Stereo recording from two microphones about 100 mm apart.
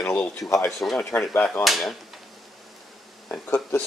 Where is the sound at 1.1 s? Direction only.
15° left (ahead or behind).